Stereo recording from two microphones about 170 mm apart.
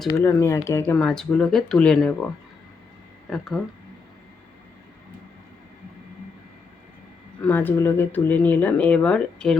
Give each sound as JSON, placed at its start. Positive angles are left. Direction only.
{"t": 0.1, "sound": "speech", "side_deg": 15}
{"t": 0.9, "sound": "speech", "side_deg": 5}
{"t": 7.4, "sound": "speech", "side_deg": 10}